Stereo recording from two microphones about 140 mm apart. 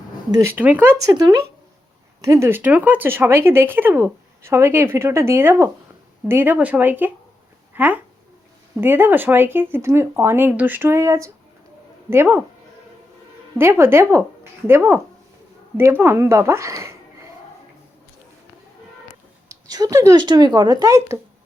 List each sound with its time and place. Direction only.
0.5 s speech: 10° right (ahead or behind)
1.1 s speech: 30° right (ahead or behind)
13.6 s speech: 15° right (ahead or behind)
19.5 s speech: 25° right (ahead or behind)